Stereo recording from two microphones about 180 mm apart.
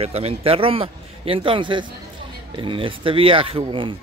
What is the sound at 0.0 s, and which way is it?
Speech, 35° right (ahead or behind).